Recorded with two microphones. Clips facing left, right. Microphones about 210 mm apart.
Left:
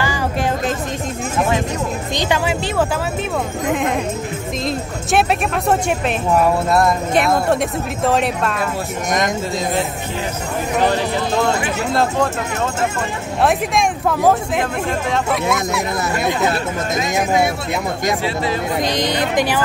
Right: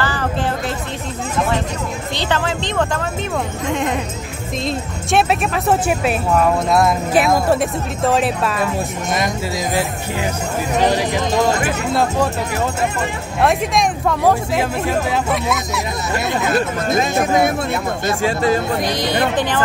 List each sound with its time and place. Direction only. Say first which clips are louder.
0.0 s music: even; 10° left (ahead or behind)
2.1 s speech: left 1 dB; 10° left (ahead or behind)
11.9 s speech: even; centre (ahead or behind)
13.4 s speech: even; centre (ahead or behind)
18.2 s speech: right 4 dB; 45° right (ahead or behind)
18.7 s speech: even; 15° left (ahead or behind)